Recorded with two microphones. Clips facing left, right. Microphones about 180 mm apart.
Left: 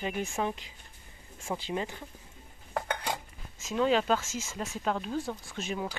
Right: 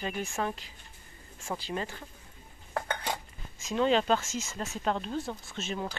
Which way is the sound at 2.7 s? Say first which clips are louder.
Even; 5° left (ahead or behind).